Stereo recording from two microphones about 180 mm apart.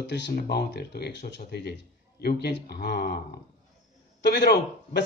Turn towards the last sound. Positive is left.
turn(degrees=70)  # may be behind; listen again after turning